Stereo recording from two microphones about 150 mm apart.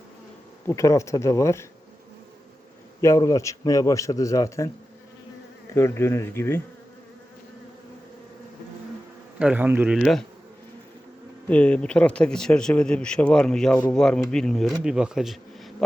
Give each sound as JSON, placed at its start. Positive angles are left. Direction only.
{"t": 0.7, "sound": "speech", "side_deg": 20}
{"t": 3.0, "sound": "speech", "side_deg": 20}
{"t": 9.4, "sound": "speech", "side_deg": -10}
{"t": 10.0, "sound": "speech", "side_deg": 5}
{"t": 11.4, "sound": "speech", "side_deg": 10}